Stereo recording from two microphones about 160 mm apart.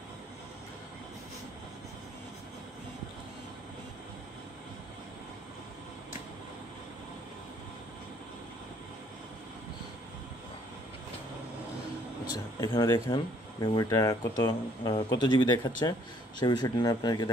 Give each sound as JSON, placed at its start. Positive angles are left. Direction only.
{"t": 12.5, "sound": "speech", "side_deg": 25}